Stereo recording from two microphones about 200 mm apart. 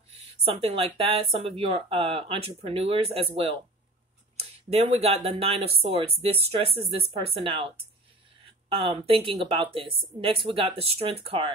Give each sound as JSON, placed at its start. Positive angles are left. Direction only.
{"t": 0.2, "sound": "speech", "side_deg": -30}
{"t": 4.6, "sound": "speech", "side_deg": -30}